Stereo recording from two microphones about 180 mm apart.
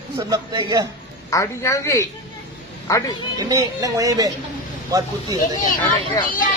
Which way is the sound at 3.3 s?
20° right (ahead or behind).